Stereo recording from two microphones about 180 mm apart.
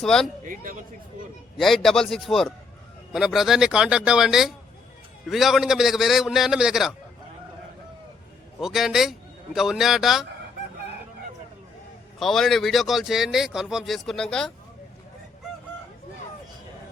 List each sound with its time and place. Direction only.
0.0 s speech: 5° left (ahead or behind)
0.4 s a man's voice: 50° right (ahead or behind)
1.5 s speech: centre (ahead or behind)
8.6 s speech: centre (ahead or behind)
12.2 s speech: centre (ahead or behind)